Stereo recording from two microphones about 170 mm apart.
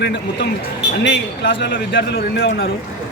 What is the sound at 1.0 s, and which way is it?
A man's voice, 90° left.